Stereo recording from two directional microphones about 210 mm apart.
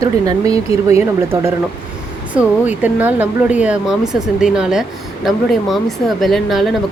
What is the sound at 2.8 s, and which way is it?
Speech, 10° right (ahead or behind).